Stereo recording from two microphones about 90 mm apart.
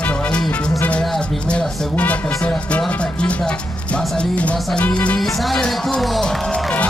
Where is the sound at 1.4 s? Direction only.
10° left (ahead or behind).